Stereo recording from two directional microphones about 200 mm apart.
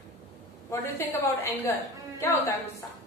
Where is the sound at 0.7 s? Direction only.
15° left (ahead or behind).